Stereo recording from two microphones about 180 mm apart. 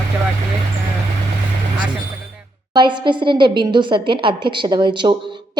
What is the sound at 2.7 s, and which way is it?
A woman's voice, 25° right (ahead or behind).